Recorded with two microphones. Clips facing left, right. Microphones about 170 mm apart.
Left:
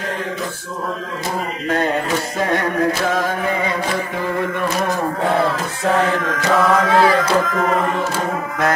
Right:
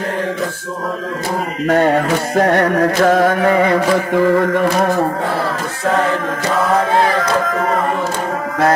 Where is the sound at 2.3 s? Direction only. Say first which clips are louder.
Right 8 dB; 60° right (ahead or behind); by 4.5 s 75° right (ahead or behind).